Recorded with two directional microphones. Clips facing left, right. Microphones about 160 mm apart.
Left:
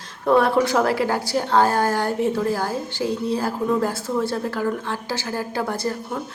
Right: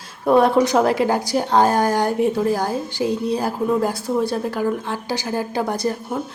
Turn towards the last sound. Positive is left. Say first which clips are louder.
# right 3 dB
turn(degrees=-15)  # may be behind; listen again after turning